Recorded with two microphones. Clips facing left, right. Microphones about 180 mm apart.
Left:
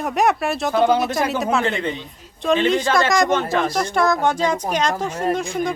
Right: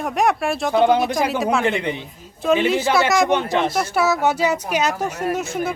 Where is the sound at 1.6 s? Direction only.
15° right (ahead or behind).